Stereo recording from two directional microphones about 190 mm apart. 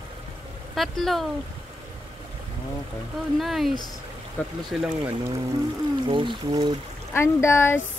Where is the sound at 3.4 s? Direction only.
Centre (ahead or behind).